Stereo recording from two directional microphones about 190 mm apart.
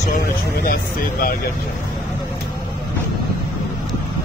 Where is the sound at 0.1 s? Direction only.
50° left (ahead or behind).